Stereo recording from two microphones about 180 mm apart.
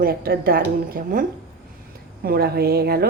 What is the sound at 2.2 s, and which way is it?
Speech, 60° right (ahead or behind).